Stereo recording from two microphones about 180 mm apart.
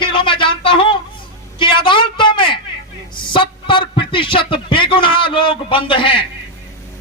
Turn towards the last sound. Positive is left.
turn(degrees=30)  # may be behind; listen again after turning